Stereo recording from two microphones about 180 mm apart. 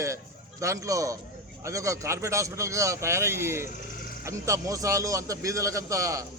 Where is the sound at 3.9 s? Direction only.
55° left (ahead or behind).